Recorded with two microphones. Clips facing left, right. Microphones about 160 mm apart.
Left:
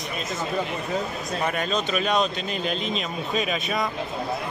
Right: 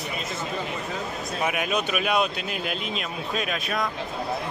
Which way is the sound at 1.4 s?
10° right (ahead or behind).